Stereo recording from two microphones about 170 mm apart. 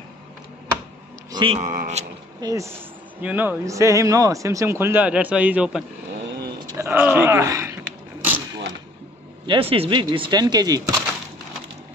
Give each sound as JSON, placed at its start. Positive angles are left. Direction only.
{"t": 1.3, "sound": "speech", "side_deg": -30}
{"t": 2.4, "sound": "speech", "side_deg": -20}
{"t": 9.5, "sound": "speech", "side_deg": -35}